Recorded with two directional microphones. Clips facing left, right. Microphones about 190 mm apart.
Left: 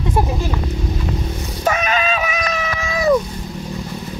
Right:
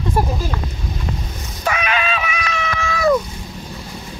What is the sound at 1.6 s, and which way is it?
Cat, 40° left (ahead or behind).